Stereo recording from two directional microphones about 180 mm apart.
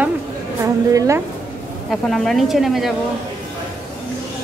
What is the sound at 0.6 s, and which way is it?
Speech, 20° right (ahead or behind).